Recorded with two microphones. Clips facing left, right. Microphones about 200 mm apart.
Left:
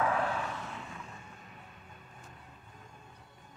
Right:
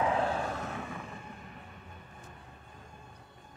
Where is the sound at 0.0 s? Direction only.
25° right (ahead or behind).